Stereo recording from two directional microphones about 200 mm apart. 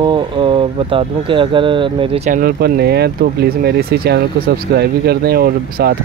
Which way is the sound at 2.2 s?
45° right (ahead or behind).